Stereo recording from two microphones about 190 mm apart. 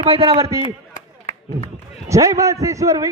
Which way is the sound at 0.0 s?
30° right (ahead or behind).